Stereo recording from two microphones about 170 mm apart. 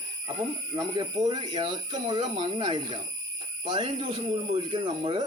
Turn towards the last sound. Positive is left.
turn(degrees=-30)  # may be behind; listen again after turning